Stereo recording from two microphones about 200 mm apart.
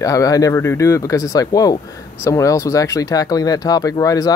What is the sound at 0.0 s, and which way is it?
Speech, 15° left (ahead or behind).